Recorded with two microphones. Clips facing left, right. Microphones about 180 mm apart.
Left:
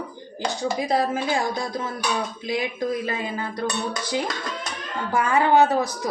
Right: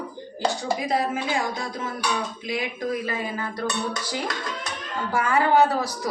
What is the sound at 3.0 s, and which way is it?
Speech, 25° left (ahead or behind).